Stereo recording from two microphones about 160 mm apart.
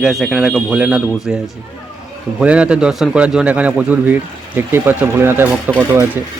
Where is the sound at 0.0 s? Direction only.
Centre (ahead or behind).